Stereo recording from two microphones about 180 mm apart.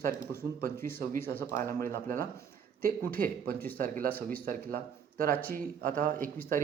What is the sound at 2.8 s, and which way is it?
Speech, 50° right (ahead or behind).